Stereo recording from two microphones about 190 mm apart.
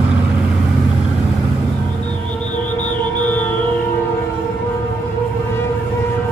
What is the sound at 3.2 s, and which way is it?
Music, 10° left (ahead or behind).